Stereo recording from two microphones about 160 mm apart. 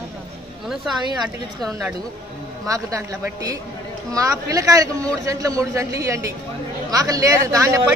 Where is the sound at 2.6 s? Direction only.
20° right (ahead or behind).